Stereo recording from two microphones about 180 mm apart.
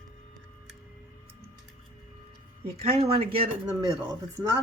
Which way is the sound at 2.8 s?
35° right (ahead or behind).